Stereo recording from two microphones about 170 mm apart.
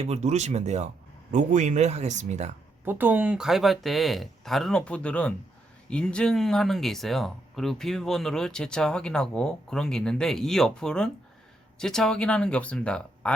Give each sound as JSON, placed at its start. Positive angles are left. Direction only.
{"t": 0.0, "sound": "speech", "side_deg": -40}
{"t": 2.8, "sound": "speech", "side_deg": -10}